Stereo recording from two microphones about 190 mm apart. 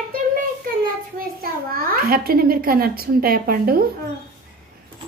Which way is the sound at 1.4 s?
50° right (ahead or behind).